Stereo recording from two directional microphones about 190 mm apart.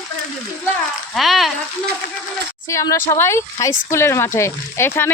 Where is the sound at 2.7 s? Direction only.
15° left (ahead or behind).